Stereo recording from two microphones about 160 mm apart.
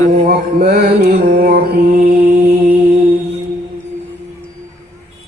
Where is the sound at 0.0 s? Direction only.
70° right (ahead or behind).